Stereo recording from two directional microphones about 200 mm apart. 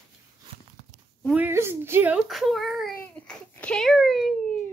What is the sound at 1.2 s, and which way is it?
Speech, 10° right (ahead or behind).